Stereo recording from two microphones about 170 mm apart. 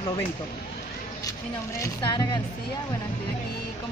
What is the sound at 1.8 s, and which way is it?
Speech, 25° left (ahead or behind).